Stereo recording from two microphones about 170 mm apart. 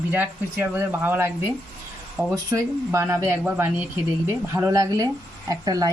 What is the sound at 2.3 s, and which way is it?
Speech, 20° right (ahead or behind).